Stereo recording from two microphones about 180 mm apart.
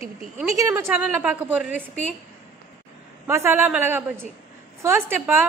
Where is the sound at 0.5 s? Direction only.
15° right (ahead or behind).